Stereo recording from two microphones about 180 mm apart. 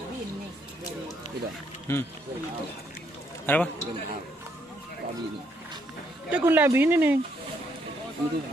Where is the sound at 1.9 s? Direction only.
15° left (ahead or behind).